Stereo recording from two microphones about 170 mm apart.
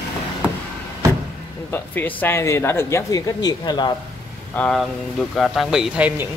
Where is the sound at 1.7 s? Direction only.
10° left (ahead or behind).